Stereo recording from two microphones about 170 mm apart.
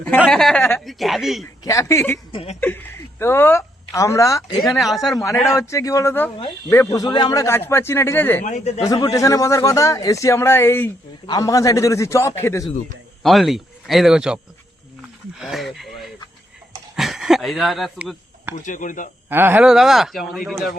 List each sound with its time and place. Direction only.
0.3 s a man's voice: 5° left (ahead or behind)
1.6 s a man's voice: 15° left (ahead or behind)
2.3 s a sound: 35° left (ahead or behind)
2.6 s a woman's voice: 10° left (ahead or behind)
4.6 s a man's voice: centre (ahead or behind)
5.5 s a man's voice: 20° left (ahead or behind)
8.4 s speech: 45° left (ahead or behind)
8.9 s a man's voice: 20° left (ahead or behind)
13.2 s a man's voice: centre (ahead or behind)
18.5 s speech: 50° left (ahead or behind)
19.3 s a man's voice: 10° right (ahead or behind)